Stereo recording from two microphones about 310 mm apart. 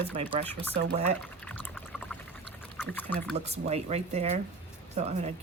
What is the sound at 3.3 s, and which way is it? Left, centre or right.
A woman's voice, centre.